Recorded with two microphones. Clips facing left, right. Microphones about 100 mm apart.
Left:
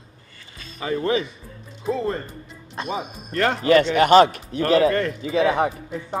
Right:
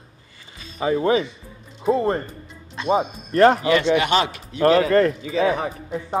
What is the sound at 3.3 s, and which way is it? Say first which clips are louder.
Speech: right 8 dB; 30° right (ahead or behind).